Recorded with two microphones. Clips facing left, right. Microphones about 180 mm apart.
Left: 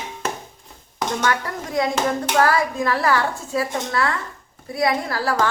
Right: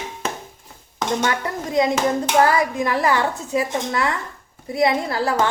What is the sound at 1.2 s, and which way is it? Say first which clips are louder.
A woman's voice: even; 20° right (ahead or behind).